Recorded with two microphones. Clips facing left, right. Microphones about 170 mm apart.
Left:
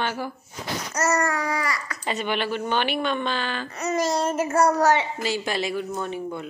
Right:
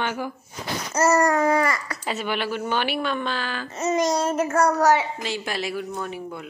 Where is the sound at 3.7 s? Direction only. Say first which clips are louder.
Right 6 dB; 25° right (ahead or behind).